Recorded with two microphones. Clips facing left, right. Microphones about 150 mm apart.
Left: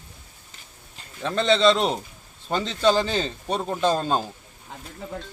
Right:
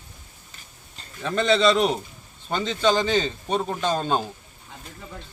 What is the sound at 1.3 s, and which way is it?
Speech, 25° left (ahead or behind).